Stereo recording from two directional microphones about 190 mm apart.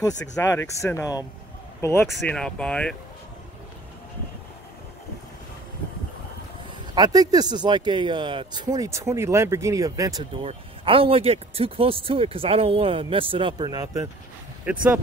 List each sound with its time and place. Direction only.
0.2 s speech: 15° left (ahead or behind)
2.1 s speech: 5° left (ahead or behind)
7.0 s speech: 20° right (ahead or behind)
10.4 s speech: 30° right (ahead or behind)
14.6 s speech: 10° right (ahead or behind)